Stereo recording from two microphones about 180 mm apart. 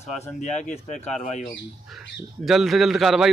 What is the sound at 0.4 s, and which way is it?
Speech, 40° left (ahead or behind).